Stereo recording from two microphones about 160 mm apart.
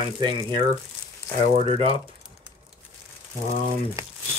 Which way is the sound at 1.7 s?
35° right (ahead or behind).